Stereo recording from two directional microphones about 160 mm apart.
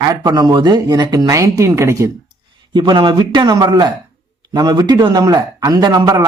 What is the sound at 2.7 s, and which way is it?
Speech, 30° right (ahead or behind).